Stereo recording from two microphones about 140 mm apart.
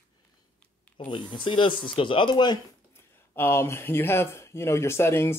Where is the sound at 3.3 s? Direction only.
15° left (ahead or behind).